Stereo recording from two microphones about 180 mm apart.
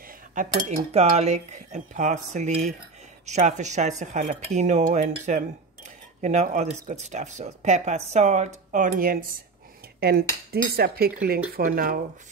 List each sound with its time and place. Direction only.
0.0 s cutlery: 50° right (ahead or behind)
3.3 s speech: 40° right (ahead or behind)